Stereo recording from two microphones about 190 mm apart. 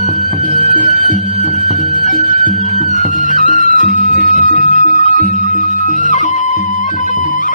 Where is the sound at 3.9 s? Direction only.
45° right (ahead or behind).